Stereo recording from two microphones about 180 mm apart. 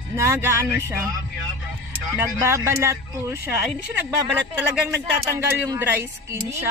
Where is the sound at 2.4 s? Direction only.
15° right (ahead or behind).